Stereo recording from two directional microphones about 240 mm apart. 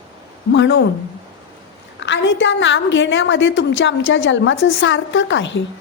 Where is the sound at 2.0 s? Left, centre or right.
Left.